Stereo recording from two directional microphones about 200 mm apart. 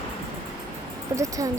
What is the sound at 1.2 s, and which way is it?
Speech, 15° right (ahead or behind).